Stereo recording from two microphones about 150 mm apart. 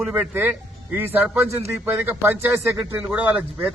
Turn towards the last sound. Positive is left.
turn(degrees=-10)  # may be behind; listen again after turning